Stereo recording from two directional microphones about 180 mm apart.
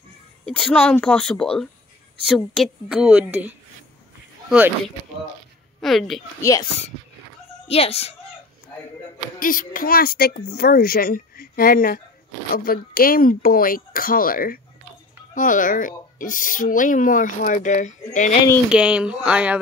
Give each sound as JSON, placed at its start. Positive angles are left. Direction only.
{"t": 0.5, "sound": "a woman's voice", "side_deg": 5}
{"t": 4.5, "sound": "speech", "side_deg": -10}
{"t": 5.8, "sound": "speech", "side_deg": 0}
{"t": 7.6, "sound": "a child's voice", "side_deg": 35}
{"t": 9.4, "sound": "speech", "side_deg": 50}
{"t": 18.7, "sound": "a woman's voice", "side_deg": -5}